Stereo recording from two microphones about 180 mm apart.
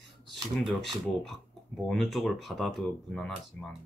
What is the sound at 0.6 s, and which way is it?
Speech, centre (ahead or behind).